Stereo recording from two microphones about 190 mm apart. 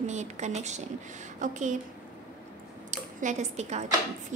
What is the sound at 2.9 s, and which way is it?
Speech, 40° right (ahead or behind).